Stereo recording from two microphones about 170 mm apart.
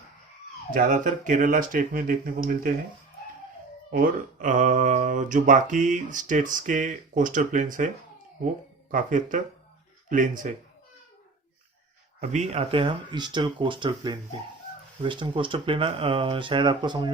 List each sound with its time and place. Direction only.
0.7 s speech: 50° right (ahead or behind)
3.9 s speech: 55° right (ahead or behind)
8.9 s speech: 50° right (ahead or behind)
12.2 s speech: 40° right (ahead or behind)